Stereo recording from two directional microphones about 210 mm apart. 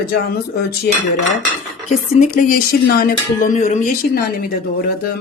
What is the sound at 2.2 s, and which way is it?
Speech, 40° left (ahead or behind).